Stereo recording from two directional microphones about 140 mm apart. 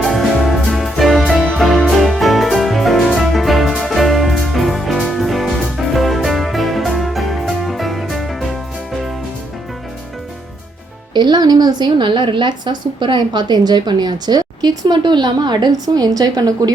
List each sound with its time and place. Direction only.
0.0 s music: centre (ahead or behind)
11.1 s a woman's voice: 30° right (ahead or behind)